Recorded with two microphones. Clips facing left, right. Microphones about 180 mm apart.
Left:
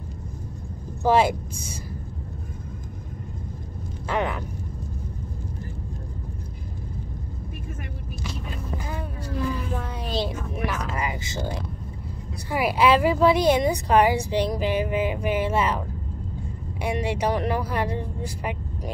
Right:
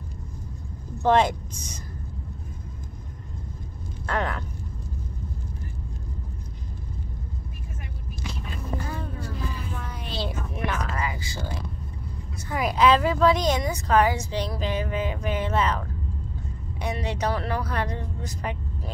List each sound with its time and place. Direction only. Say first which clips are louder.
1.0 s speech: left 1 dB; 10° left (ahead or behind)
4.0 s speech: left 2 dB; 5° left (ahead or behind)
8.7 s a sound: right 2 dB; 15° left (ahead or behind)
10.2 s a sound: left 2 dB; 5° left (ahead or behind)
10.9 s music: left 2 dB; 20° left (ahead or behind)
12.5 s speech: left 1 dB; 10° left (ahead or behind)
16.8 s speech: left 3 dB; 10° left (ahead or behind)